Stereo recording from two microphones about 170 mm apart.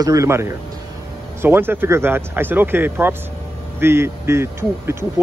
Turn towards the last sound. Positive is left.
turn(degrees=-15)  # may be behind; listen again after turning